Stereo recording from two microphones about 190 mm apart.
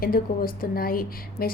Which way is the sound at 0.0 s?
50° left (ahead or behind).